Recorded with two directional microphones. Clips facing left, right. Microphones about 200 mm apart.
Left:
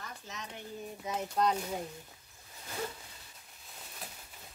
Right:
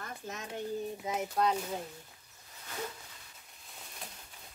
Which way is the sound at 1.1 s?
5° right (ahead or behind).